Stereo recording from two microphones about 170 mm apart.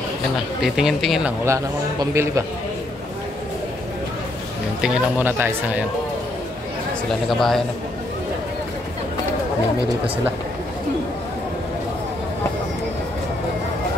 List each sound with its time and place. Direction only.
0.7 s speech: centre (ahead or behind)
1.4 s a man's voice: 15° right (ahead or behind)
4.8 s a man's voice: 10° right (ahead or behind)
7.2 s speech: centre (ahead or behind)